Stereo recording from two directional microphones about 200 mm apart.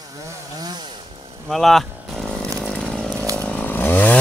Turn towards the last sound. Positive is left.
turn(degrees=10)  # may be behind; listen again after turning